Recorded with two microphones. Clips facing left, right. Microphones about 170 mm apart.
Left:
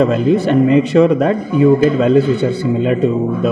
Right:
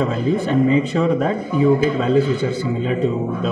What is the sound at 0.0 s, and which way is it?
Speech, 80° left.